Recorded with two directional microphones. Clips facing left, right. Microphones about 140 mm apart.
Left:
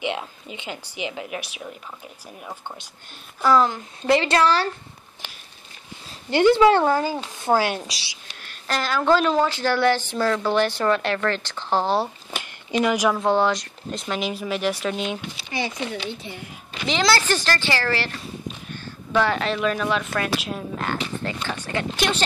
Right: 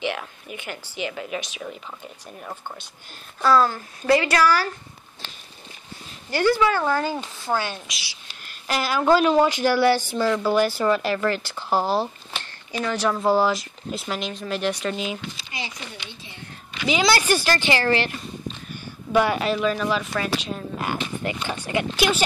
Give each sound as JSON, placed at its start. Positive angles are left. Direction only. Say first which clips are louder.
{"t": 0.0, "sound": "a woman's voice", "louder": "left 1 dB", "side_deg": 20}
{"t": 5.2, "sound": "walk", "louder": "left 1 dB", "side_deg": 10}
{"t": 6.3, "sound": "a woman's voice", "louder": "left 5 dB", "side_deg": 25}
{"t": 8.3, "sound": "speech", "louder": "even", "side_deg": -5}
{"t": 12.7, "sound": "a woman's voice", "louder": "left 4 dB", "side_deg": 15}
{"t": 13.2, "sound": "speech", "louder": "even", "side_deg": -5}
{"t": 15.8, "sound": "speech", "louder": "left 10 dB", "side_deg": 75}
{"t": 16.8, "sound": "speech", "louder": "right 1 dB", "side_deg": -5}
{"t": 20.7, "sound": "speech", "louder": "even", "side_deg": -10}